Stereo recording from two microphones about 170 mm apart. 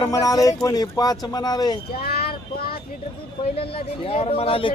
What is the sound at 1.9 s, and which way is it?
Speech, 65° left (ahead or behind).